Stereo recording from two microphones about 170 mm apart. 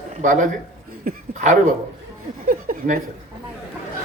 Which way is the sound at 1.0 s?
45° right (ahead or behind).